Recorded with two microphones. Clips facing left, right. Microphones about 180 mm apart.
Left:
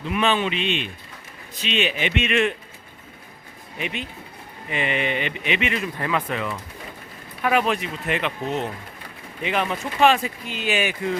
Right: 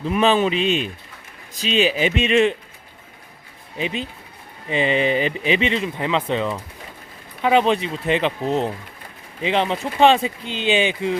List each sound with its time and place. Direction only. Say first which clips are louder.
0.0 s speech: right 5 dB; 35° right (ahead or behind)
3.8 s speech: right 5 dB; 30° right (ahead or behind)